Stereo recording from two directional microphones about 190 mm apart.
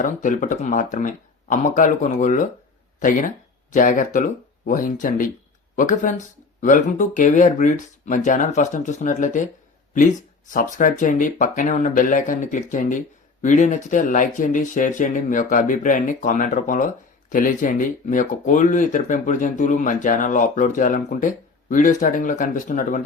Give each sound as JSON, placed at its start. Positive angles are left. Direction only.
{"t": 0.0, "sound": "speech", "side_deg": 45}